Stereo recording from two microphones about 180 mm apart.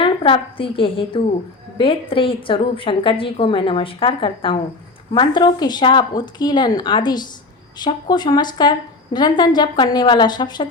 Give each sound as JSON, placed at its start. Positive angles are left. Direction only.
{"t": 0.0, "sound": "a woman's voice", "side_deg": 30}